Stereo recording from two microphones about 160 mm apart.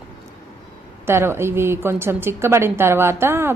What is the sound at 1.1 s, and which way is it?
A woman's voice, 15° right (ahead or behind).